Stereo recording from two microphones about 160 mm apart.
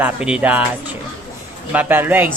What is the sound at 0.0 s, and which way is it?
Speech, 5° right (ahead or behind).